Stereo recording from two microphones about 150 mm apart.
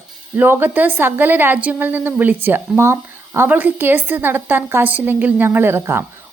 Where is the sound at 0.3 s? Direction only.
15° right (ahead or behind).